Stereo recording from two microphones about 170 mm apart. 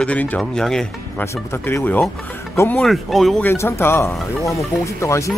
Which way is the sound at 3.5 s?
15° left (ahead or behind).